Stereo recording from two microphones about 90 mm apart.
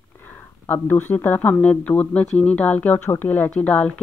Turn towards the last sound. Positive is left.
turn(degrees=15)  # may be behind; listen again after turning